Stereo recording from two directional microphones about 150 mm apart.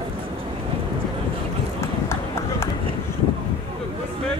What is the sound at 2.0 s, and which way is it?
Run, 20° left (ahead or behind).